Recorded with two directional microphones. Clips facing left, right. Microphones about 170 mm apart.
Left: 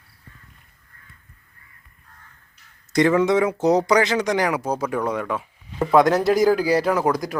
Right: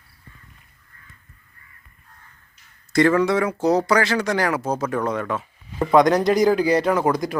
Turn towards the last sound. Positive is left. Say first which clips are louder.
# right 1 dB
turn(degrees=0)  # may be behind; listen again after turning